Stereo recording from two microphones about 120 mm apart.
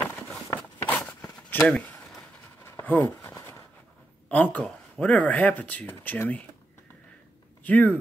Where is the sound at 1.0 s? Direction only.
10° left (ahead or behind).